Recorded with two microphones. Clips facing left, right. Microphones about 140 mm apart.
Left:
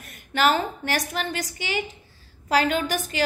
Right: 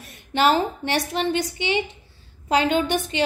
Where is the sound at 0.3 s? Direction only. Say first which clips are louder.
Right 2 dB; 25° right (ahead or behind).